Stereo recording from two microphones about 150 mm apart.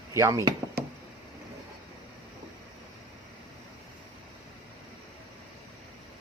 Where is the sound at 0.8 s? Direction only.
90° right.